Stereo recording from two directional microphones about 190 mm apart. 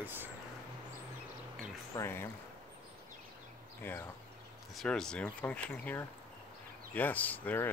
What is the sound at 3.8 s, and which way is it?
Speech, 10° left (ahead or behind).